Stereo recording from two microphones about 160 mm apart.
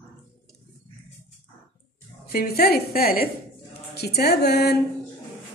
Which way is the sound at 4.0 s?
85° left.